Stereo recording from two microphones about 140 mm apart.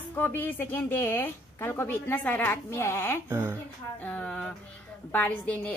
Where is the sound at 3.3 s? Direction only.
20° right (ahead or behind).